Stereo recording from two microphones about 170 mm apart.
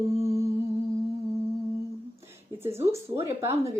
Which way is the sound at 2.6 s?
15° right (ahead or behind).